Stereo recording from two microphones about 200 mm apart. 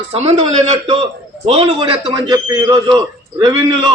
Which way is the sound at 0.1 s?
30° right (ahead or behind).